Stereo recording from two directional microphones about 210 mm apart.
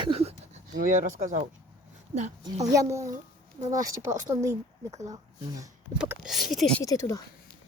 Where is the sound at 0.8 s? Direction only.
35° right (ahead or behind).